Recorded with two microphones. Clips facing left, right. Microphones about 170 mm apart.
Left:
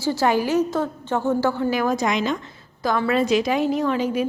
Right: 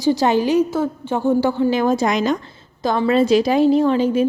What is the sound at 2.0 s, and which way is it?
Speech, 40° right (ahead or behind).